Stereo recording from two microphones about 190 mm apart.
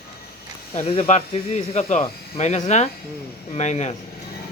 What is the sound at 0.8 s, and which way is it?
Speech, 35° left (ahead or behind).